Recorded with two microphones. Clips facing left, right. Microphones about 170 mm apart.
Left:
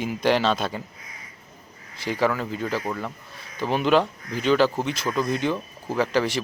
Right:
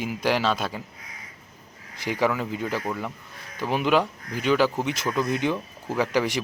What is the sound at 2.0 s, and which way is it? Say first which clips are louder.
Speech: left 1 dB; 15° right (ahead or behind).